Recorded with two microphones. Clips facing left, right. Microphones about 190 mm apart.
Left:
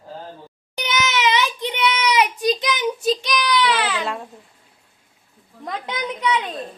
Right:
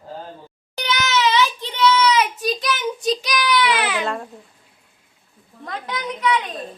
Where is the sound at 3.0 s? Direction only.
Centre (ahead or behind).